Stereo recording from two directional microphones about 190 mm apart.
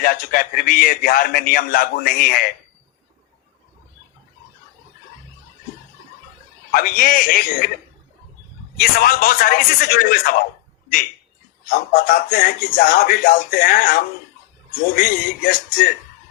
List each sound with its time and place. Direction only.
0.0 s a man's voice: 50° left (ahead or behind)
6.7 s a man's voice: 50° left (ahead or behind)
8.8 s a man's voice: 50° left (ahead or behind)
11.6 s a man's voice: 50° left (ahead or behind)